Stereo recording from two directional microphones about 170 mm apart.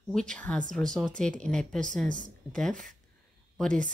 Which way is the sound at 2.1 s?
50° right (ahead or behind).